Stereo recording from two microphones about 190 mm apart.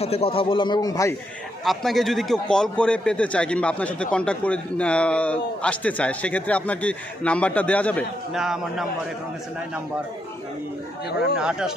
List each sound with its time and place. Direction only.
0.0 s a man's voice: 30° left (ahead or behind)
1.6 s a man's voice: centre (ahead or behind)
11.3 s a man's voice: 5° right (ahead or behind)